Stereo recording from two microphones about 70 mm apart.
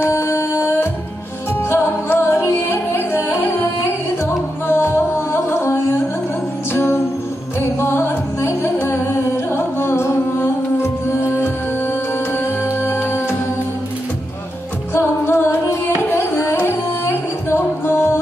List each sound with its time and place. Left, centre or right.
0.0 s music: left
4.6 s music: left
12.8 s music: left
15.0 s music: left